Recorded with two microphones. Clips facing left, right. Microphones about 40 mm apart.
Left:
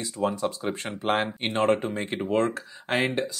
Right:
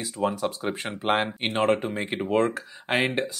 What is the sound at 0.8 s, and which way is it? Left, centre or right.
Speech, right.